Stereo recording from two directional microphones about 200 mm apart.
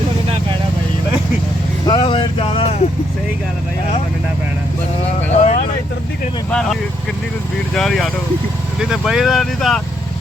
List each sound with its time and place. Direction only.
1.9 s vehicle: 25° left (ahead or behind)
5.4 s vehicle: 35° left (ahead or behind)
6.5 s speech: centre (ahead or behind)